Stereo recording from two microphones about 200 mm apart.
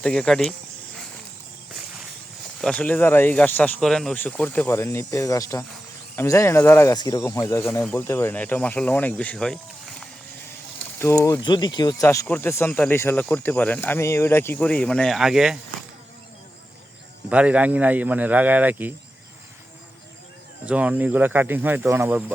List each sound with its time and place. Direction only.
0.0 s speech: 5° left (ahead or behind)
2.6 s speech: 5° left (ahead or behind)
11.0 s speech: 15° left (ahead or behind); by 15.5 s centre (ahead or behind)
17.2 s speech: 5° right (ahead or behind)
20.7 s speech: 5° right (ahead or behind)